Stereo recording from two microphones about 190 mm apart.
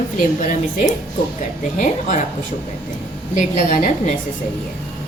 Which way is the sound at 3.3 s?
40° left (ahead or behind).